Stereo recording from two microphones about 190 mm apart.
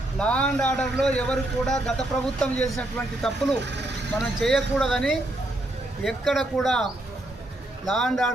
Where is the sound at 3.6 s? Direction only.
65° right (ahead or behind).